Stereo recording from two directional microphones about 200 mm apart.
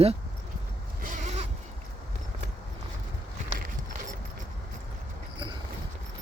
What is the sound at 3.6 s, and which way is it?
Walk, 40° right (ahead or behind).